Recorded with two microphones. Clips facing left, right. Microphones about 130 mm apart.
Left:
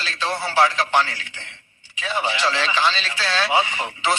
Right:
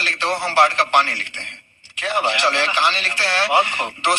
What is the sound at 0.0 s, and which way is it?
A man's voice, 65° right (ahead or behind).